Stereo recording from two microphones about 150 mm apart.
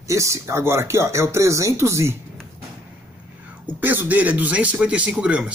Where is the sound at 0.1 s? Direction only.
20° right (ahead or behind).